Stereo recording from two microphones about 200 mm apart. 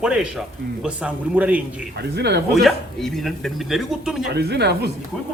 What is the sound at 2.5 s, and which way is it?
Speech, centre (ahead or behind).